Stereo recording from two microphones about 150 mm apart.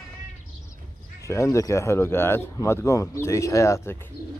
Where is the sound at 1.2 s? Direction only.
20° left (ahead or behind).